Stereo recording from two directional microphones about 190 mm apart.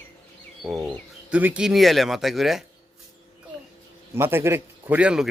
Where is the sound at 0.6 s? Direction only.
Centre (ahead or behind).